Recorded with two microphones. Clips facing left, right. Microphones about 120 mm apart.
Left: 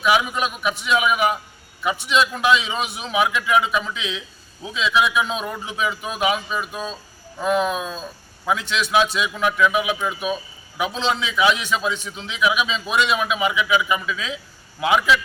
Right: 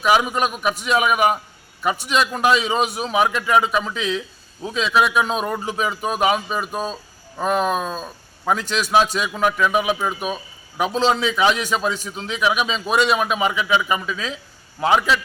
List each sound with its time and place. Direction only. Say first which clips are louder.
0.0 s a man's voice: right 2 dB; 45° right (ahead or behind)